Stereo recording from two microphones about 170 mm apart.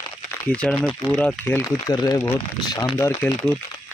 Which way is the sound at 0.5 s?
5° left (ahead or behind).